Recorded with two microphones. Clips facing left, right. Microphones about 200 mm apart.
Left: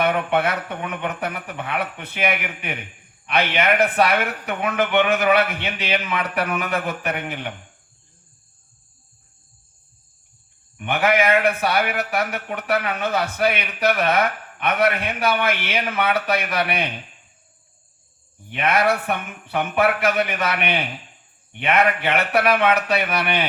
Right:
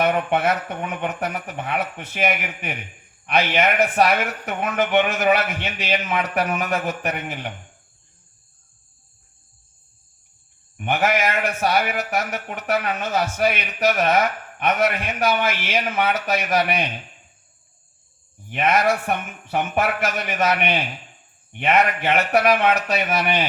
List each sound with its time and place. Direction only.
0.0 s speech: 60° left (ahead or behind)
10.8 s speech: 60° left (ahead or behind)
18.6 s speech: 60° left (ahead or behind)